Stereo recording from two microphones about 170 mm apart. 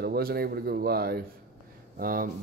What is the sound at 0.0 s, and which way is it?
Speech, 65° right (ahead or behind).